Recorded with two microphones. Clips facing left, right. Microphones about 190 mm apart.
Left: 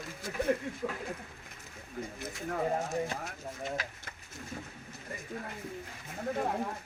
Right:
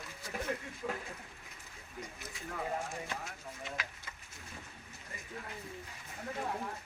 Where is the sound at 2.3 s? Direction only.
45° left (ahead or behind).